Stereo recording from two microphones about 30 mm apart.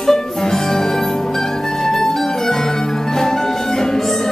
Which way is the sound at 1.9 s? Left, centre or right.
Centre.